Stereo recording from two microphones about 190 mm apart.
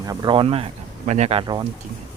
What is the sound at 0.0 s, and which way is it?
Speech, 20° right (ahead or behind).